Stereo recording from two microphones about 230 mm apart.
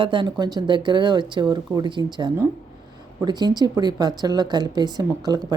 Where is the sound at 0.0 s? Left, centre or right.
Right.